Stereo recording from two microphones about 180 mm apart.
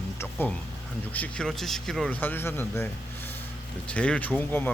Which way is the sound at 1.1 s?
5° left (ahead or behind).